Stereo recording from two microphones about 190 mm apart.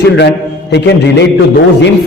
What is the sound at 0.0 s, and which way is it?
A man's voice, 65° left (ahead or behind).